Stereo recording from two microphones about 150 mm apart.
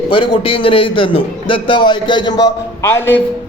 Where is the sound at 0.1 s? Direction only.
35° left (ahead or behind).